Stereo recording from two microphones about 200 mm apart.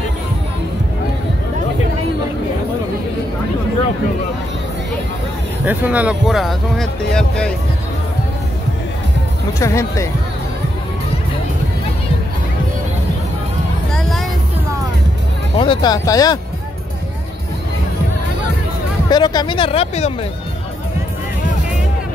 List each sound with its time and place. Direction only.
5.7 s speech: 10° right (ahead or behind)
9.6 s speech: 15° left (ahead or behind)
15.5 s speech: 25° left (ahead or behind)
19.0 s speech: 20° left (ahead or behind)